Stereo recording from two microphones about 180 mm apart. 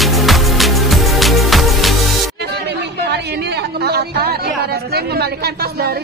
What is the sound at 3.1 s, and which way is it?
A woman's voice, 65° right (ahead or behind).